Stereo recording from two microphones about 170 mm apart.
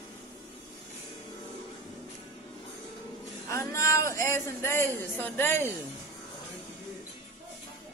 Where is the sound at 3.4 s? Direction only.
15° left (ahead or behind).